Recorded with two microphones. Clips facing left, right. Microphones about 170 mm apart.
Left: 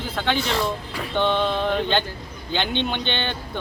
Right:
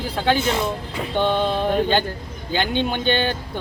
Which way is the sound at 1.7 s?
45° right (ahead or behind).